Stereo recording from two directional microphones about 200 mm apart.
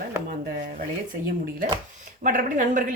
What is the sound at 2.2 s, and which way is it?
Speech, 40° right (ahead or behind).